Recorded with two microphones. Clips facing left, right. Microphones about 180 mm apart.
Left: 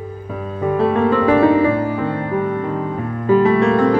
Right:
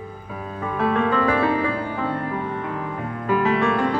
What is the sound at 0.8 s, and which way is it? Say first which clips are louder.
Music: left 5 dB; 30° left (ahead or behind).